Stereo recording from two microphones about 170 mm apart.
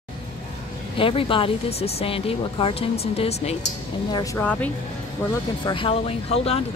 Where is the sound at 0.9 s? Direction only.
30° left (ahead or behind).